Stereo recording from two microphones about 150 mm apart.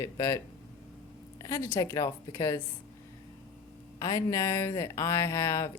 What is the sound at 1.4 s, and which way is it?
Speech, 20° left (ahead or behind).